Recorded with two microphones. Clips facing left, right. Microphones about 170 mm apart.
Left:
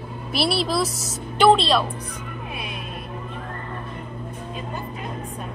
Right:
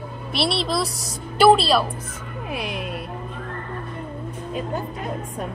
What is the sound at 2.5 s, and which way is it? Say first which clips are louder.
Speech: right 8 dB; 90° right.